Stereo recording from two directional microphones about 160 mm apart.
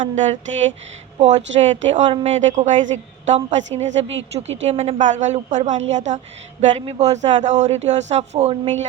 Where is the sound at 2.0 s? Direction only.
35° right (ahead or behind).